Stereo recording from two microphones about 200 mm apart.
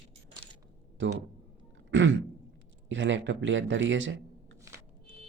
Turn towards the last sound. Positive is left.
turn(degrees=-15)  # may be behind; listen again after turning